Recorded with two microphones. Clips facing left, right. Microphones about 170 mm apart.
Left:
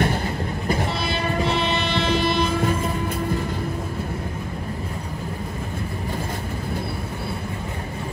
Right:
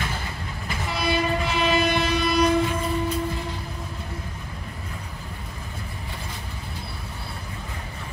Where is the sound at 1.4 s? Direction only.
30° left (ahead or behind).